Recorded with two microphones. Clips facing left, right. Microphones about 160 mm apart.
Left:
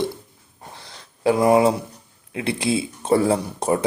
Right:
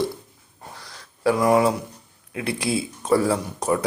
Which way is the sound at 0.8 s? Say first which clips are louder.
Left 1 dB; 25° left (ahead or behind).